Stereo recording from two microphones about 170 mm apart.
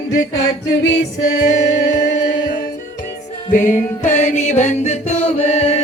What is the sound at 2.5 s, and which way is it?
Music, 60° left (ahead or behind).